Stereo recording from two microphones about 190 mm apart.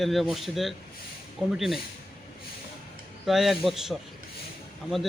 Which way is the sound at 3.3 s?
Centre (ahead or behind).